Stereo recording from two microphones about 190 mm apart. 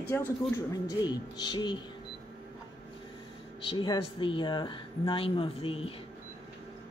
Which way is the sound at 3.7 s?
25° left (ahead or behind).